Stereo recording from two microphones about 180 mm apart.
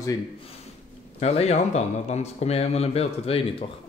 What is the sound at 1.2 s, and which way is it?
Speech, 35° left (ahead or behind).